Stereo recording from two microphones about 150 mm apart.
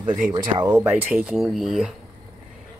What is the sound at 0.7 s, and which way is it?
Speech, 10° right (ahead or behind).